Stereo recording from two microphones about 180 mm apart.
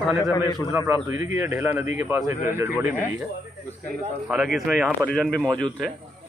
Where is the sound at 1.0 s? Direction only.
10° right (ahead or behind).